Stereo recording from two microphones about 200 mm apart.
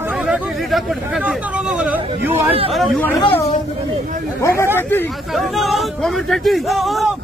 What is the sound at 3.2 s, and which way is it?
Speech, 30° left (ahead or behind).